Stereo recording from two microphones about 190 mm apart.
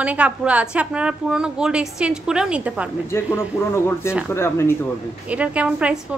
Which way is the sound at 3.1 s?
15° left (ahead or behind).